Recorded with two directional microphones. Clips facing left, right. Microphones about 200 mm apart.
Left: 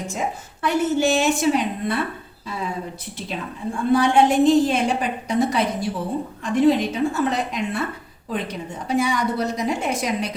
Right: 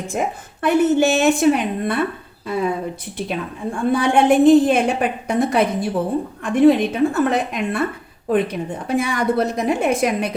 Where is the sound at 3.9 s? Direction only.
55° right (ahead or behind).